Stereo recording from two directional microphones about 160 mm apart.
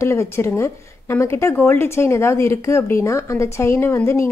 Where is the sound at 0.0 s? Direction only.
15° left (ahead or behind).